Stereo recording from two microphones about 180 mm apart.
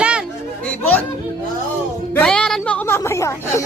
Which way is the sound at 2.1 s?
5° left (ahead or behind).